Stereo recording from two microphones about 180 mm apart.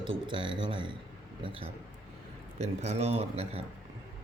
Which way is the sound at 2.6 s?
40° right (ahead or behind).